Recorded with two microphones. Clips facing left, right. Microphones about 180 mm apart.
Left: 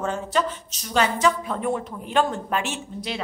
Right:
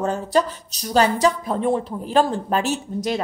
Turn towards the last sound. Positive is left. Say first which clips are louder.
# right 7 dB
turn(degrees=-40)  # may be behind; listen again after turning